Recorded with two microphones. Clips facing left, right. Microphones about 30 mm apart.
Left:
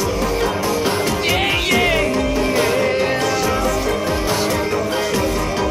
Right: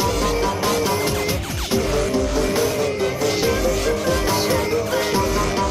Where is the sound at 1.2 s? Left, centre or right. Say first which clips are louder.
Left 8 dB; left.